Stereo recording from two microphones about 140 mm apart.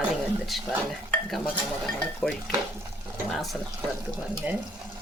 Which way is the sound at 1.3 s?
5° left (ahead or behind).